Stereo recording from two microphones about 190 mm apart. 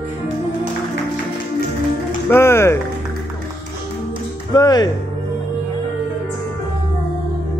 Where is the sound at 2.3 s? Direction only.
15° left (ahead or behind).